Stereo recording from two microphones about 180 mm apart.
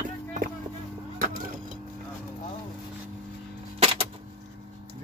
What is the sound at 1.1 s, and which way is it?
Wood, 50° right (ahead or behind).